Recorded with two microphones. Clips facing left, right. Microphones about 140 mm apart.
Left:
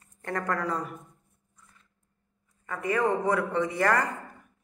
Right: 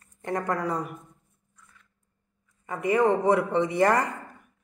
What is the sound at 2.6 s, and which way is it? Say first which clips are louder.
Speech: right 4 dB; 25° right (ahead or behind).